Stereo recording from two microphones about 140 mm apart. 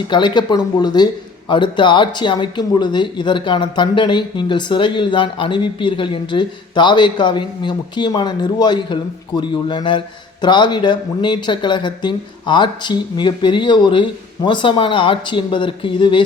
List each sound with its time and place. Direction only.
0.1 s speech: 35° left (ahead or behind)